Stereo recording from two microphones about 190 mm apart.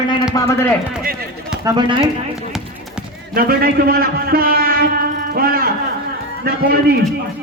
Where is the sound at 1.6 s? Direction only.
25° right (ahead or behind).